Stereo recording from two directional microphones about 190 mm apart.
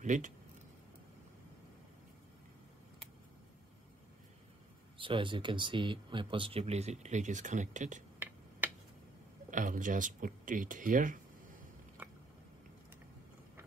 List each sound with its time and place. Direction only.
0.0 s speech: 40° right (ahead or behind)
4.9 s speech: 25° right (ahead or behind)
8.2 s finger snapping: 10° right (ahead or behind)
9.5 s speech: 40° right (ahead or behind)